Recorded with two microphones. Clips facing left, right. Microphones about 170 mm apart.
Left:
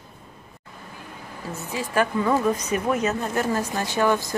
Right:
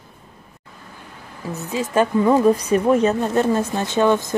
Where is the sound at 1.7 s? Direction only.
20° right (ahead or behind).